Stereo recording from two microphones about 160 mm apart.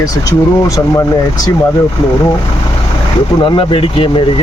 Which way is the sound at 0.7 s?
20° left (ahead or behind).